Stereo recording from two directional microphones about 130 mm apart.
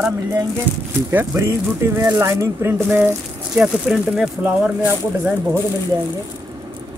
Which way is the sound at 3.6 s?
5° right (ahead or behind).